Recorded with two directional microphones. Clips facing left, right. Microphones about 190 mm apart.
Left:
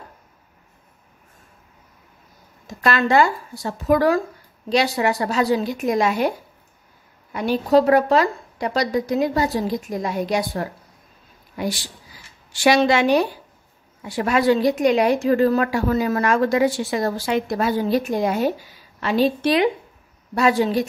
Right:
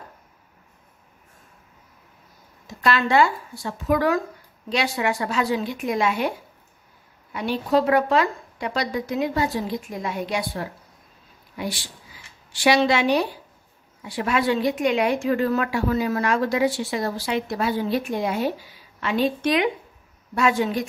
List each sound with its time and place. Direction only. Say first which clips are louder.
2.6 s a woman's voice: left 2 dB; 45° left (ahead or behind)
7.3 s a woman's voice: left 4 dB; 40° left (ahead or behind)